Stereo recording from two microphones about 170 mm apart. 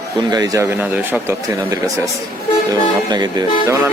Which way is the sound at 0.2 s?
25° right (ahead or behind).